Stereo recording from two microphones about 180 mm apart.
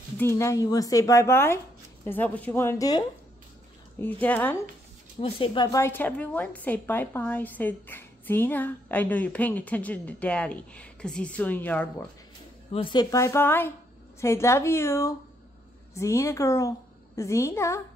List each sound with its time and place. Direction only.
0.2 s a woman's voice: 15° left (ahead or behind)
4.0 s a woman's voice: 10° left (ahead or behind)
5.2 s a woman's voice: 30° left (ahead or behind); by 11.9 s 10° left (ahead or behind)
12.7 s a woman's voice: 25° left (ahead or behind)